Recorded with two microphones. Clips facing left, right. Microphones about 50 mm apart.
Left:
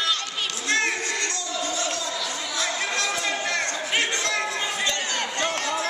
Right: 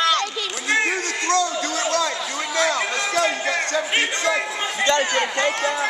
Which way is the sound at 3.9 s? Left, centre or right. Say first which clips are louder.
Right 2 dB; centre.